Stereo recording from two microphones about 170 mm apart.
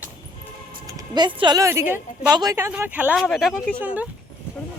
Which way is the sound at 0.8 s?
25° right (ahead or behind).